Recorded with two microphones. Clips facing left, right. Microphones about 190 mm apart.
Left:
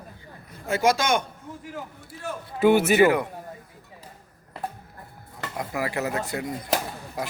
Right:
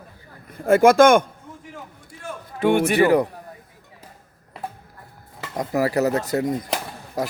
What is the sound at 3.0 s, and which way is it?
Speech, 35° right (ahead or behind).